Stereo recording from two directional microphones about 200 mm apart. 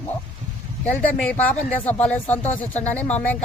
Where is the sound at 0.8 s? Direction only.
5° left (ahead or behind).